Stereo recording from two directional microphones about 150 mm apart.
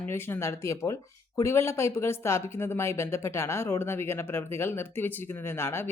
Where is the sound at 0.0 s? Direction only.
15° left (ahead or behind).